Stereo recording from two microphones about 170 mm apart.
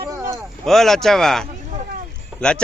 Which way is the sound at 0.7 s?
Centre (ahead or behind).